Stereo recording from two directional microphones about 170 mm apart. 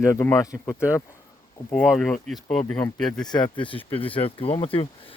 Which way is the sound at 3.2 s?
25° left (ahead or behind).